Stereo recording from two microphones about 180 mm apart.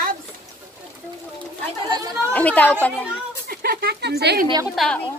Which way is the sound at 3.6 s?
60° right (ahead or behind).